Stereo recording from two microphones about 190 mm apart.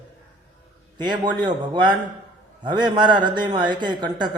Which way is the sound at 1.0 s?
25° right (ahead or behind).